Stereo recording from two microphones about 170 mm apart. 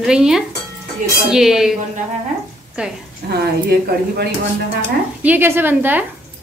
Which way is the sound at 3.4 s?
75° right (ahead or behind).